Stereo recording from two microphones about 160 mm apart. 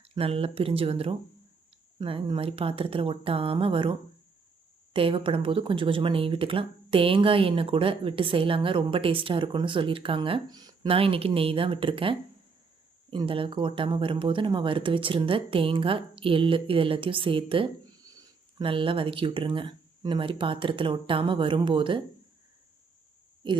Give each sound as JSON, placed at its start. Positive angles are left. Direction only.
{"t": 0.0, "sound": "speech", "side_deg": -35}
{"t": 4.9, "sound": "speech", "side_deg": -35}